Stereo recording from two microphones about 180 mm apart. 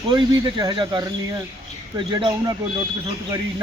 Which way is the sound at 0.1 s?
25° right (ahead or behind).